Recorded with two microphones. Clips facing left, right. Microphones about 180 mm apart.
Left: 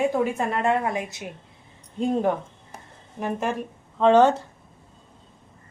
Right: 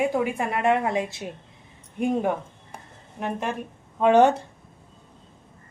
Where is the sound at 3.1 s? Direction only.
Centre (ahead or behind).